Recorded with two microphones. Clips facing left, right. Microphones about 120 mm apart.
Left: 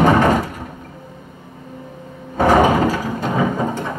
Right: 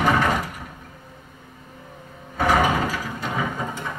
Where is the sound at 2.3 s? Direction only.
40° left (ahead or behind).